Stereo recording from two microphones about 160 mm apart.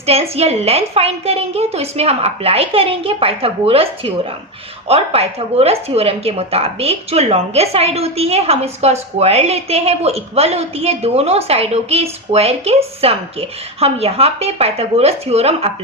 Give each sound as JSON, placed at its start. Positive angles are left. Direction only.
{"t": 0.0, "sound": "speech", "side_deg": -40}